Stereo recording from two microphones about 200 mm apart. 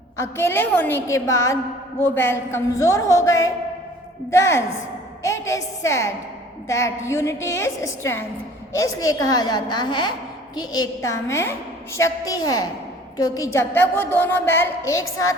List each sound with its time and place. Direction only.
0.2 s a woman's voice: 10° left (ahead or behind)